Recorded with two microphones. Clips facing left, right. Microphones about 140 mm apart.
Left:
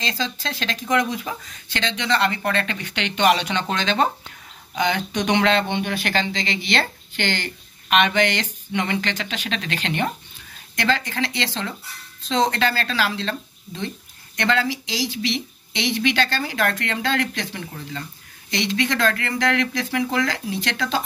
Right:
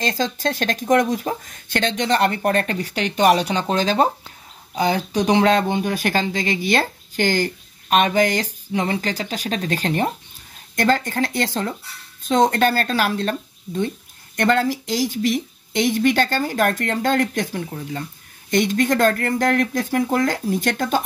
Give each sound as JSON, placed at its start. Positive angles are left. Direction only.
{"t": 0.0, "sound": "speech", "side_deg": -45}